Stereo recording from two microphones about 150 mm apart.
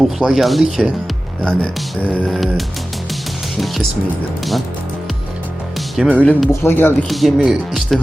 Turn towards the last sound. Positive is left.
turn(degrees=0)  # may be behind; listen again after turning